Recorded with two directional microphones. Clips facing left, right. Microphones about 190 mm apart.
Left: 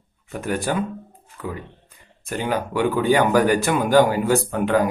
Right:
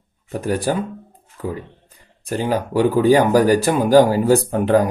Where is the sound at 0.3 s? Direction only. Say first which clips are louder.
Right 3 dB; 35° right (ahead or behind).